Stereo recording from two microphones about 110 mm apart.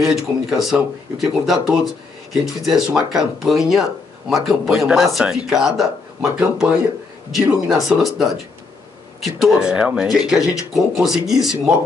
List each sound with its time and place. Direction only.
0.0 s speech: 5° right (ahead or behind)
7.2 s speech: 5° right (ahead or behind)